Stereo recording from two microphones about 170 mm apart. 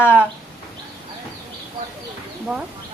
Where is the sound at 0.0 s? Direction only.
10° left (ahead or behind).